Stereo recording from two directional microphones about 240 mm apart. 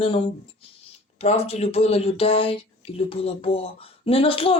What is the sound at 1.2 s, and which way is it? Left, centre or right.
Speech, left.